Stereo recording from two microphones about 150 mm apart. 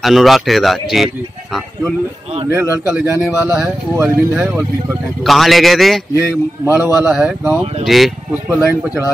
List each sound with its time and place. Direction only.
0.0 s a man's voice: centre (ahead or behind)
2.5 s speech: 15° right (ahead or behind)
5.2 s a man's voice: centre (ahead or behind)
6.1 s a man's voice: 15° right (ahead or behind)
8.5 s speech: 15° right (ahead or behind)